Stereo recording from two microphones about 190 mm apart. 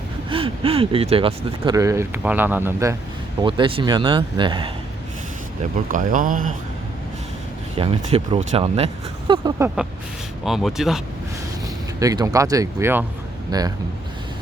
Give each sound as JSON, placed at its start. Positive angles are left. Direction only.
{"t": 0.3, "sound": "speech", "side_deg": -30}
{"t": 3.4, "sound": "speech", "side_deg": -30}
{"t": 5.7, "sound": "speech", "side_deg": -45}
{"t": 7.8, "sound": "speech", "side_deg": -30}
{"t": 10.4, "sound": "speech", "side_deg": 0}
{"t": 11.9, "sound": "speech", "side_deg": -20}